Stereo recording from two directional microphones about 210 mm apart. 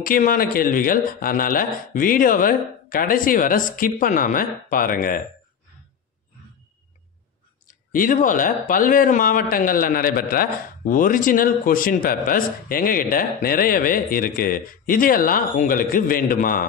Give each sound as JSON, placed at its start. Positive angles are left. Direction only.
{"t": 0.0, "sound": "speech", "side_deg": 40}
{"t": 7.6, "sound": "speech", "side_deg": 40}